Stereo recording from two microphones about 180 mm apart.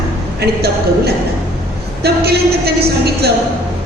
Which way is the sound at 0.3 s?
60° right (ahead or behind).